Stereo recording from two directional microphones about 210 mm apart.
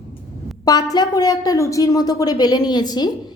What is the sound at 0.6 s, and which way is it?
A woman's voice, 20° left (ahead or behind).